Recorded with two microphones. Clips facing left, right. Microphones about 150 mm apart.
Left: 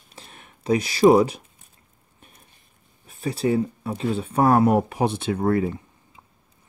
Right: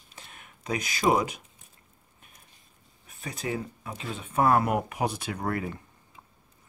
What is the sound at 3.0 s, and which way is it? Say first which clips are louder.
Speech: left 11 dB; 30° left (ahead or behind).